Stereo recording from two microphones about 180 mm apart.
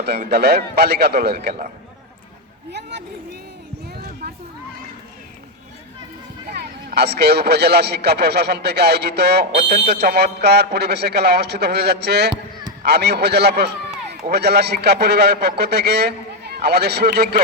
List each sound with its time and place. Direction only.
0.3 s speech: 60° right (ahead or behind)
6.5 s a man's voice: 65° right (ahead or behind)